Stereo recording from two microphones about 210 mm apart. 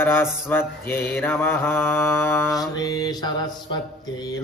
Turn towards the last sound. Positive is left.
turn(degrees=15)  # may be behind; listen again after turning